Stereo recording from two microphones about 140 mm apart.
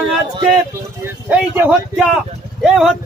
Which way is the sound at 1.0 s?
10° right (ahead or behind).